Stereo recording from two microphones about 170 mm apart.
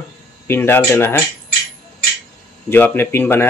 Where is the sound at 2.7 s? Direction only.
10° left (ahead or behind).